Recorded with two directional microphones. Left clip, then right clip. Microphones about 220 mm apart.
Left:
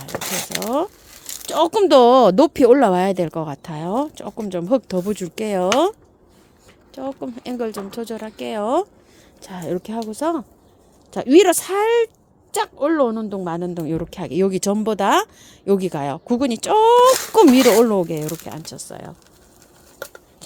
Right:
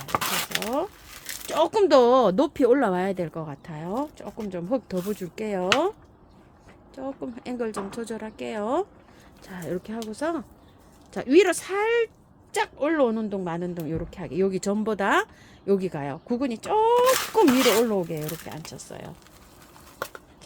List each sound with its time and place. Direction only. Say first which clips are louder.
0.1 s a sound: even; centre (ahead or behind)
1.5 s a woman's voice: left 5 dB; 40° left (ahead or behind)
6.9 s a woman's voice: left 6 dB; 35° left (ahead or behind)